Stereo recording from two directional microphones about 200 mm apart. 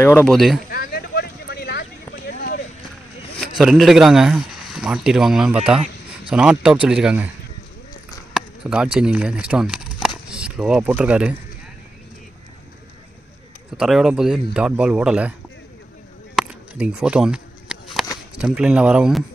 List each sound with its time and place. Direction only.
0.0 s speech: 10° left (ahead or behind)
0.7 s a sound: 50° left (ahead or behind)
3.3 s speech: centre (ahead or behind)
8.3 s speech: 5° right (ahead or behind)
13.7 s speech: 5° right (ahead or behind)
16.3 s a sound: 5° right (ahead or behind)